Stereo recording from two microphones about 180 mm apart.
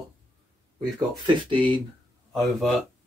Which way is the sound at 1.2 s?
25° right (ahead or behind).